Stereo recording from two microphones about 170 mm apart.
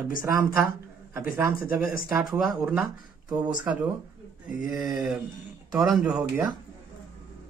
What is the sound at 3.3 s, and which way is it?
Speech, 25° right (ahead or behind).